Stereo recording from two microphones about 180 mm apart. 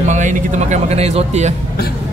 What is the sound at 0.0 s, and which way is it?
Speech, 40° right (ahead or behind).